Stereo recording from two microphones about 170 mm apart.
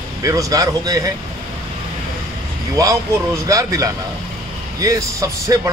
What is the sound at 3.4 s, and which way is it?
A man's voice, 20° right (ahead or behind).